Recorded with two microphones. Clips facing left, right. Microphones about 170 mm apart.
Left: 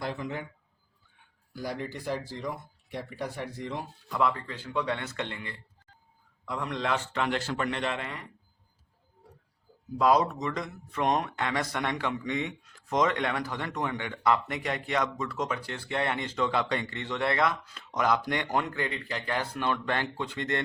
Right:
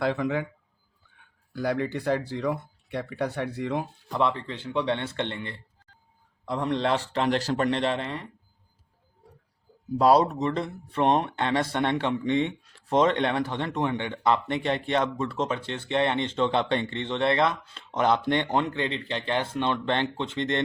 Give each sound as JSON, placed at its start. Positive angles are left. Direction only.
{"t": 0.0, "sound": "a man's voice", "side_deg": -80}
{"t": 1.5, "sound": "speech", "side_deg": -65}
{"t": 4.1, "sound": "a man's voice", "side_deg": -25}
{"t": 10.0, "sound": "speech", "side_deg": -35}